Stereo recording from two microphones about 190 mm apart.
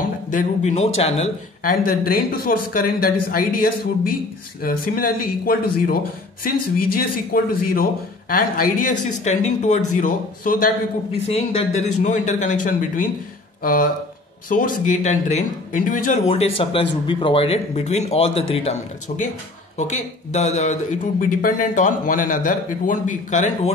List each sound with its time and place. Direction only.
0.3 s speech: 40° left (ahead or behind)
1.7 s speech: 50° left (ahead or behind)
7.0 s speech: 50° left (ahead or behind)
11.2 s speech: 30° left (ahead or behind)
16.3 s speech: 30° left (ahead or behind)